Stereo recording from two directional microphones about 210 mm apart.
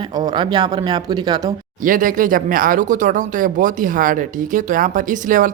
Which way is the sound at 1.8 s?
40° right (ahead or behind).